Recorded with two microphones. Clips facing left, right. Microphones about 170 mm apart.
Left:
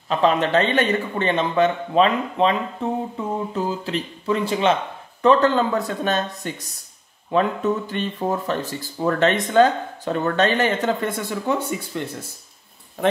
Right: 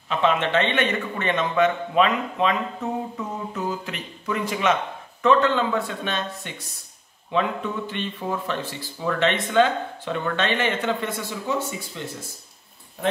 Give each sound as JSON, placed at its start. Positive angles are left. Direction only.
{"t": 0.1, "sound": "speech", "side_deg": 35}
{"t": 3.2, "sound": "a sound", "side_deg": 30}
{"t": 3.5, "sound": "speech", "side_deg": 30}
{"t": 11.1, "sound": "speech", "side_deg": 55}